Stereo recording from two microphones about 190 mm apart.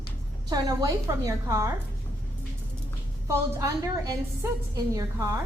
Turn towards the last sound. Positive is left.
turn(degrees=-15)  # may be behind; listen again after turning